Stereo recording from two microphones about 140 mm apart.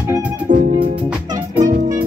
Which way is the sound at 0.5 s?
60° right (ahead or behind).